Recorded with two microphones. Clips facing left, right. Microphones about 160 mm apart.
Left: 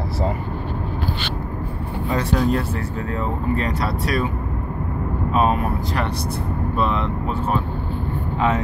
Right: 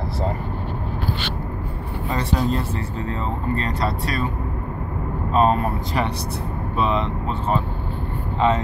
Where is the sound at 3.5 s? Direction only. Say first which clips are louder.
Left 1 dB; 5° left (ahead or behind).